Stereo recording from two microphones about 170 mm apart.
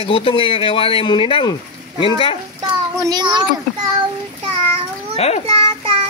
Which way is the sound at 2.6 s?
25° right (ahead or behind).